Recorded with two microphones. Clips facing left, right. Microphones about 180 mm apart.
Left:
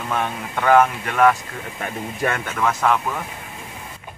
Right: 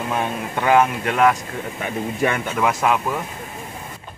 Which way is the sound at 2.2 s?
10° right (ahead or behind).